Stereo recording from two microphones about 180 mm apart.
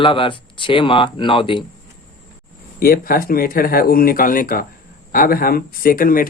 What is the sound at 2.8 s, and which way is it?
Speech, 55° left (ahead or behind).